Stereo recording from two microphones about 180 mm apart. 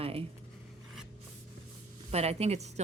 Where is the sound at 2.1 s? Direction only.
35° right (ahead or behind).